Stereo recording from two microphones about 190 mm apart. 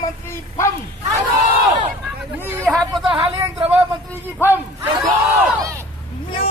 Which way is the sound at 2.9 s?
25° right (ahead or behind).